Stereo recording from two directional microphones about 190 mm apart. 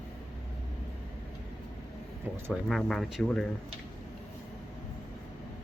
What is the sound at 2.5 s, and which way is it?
Speech, centre (ahead or behind).